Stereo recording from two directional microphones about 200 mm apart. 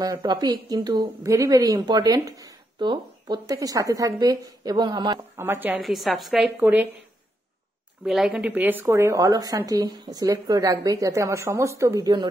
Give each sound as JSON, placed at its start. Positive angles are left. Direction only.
{"t": 0.0, "sound": "a woman's voice", "side_deg": -20}
{"t": 5.4, "sound": "a woman's voice", "side_deg": -10}
{"t": 8.0, "sound": "speech", "side_deg": -5}